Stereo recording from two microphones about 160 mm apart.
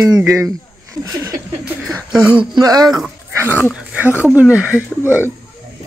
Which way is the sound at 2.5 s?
25° right (ahead or behind).